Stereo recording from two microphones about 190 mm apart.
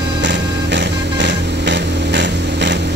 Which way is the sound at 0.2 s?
70° right (ahead or behind).